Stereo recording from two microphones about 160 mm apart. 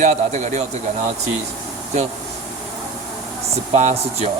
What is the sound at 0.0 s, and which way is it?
Speech, 50° right (ahead or behind).